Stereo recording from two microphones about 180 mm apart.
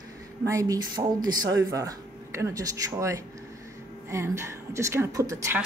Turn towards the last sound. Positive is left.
turn(degrees=-15)  # may be behind; listen again after turning